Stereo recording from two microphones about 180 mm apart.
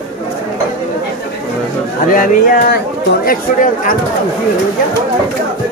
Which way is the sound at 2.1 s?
50° left (ahead or behind).